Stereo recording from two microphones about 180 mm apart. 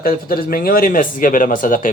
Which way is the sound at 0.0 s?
55° left (ahead or behind).